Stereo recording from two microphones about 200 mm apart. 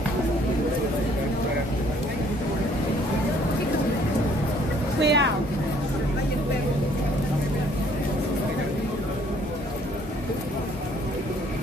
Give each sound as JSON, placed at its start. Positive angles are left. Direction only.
{"t": 5.0, "sound": "vehicle", "side_deg": -60}